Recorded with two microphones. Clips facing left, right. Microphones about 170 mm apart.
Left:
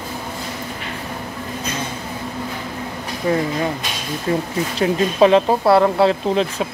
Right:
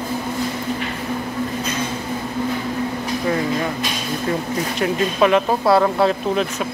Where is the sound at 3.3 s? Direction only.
30° left (ahead or behind).